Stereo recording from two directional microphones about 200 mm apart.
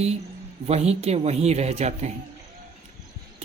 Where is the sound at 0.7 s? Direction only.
30° right (ahead or behind).